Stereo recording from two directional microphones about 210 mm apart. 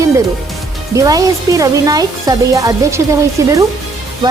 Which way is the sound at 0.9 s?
15° right (ahead or behind).